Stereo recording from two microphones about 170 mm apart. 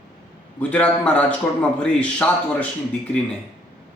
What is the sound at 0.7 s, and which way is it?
Speech, 10° left (ahead or behind).